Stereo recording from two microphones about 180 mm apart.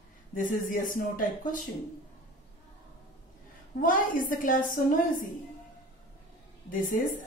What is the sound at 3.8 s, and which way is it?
Speech, 50° left (ahead or behind).